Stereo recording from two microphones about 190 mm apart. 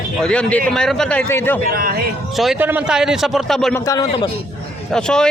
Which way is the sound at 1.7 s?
50° right (ahead or behind).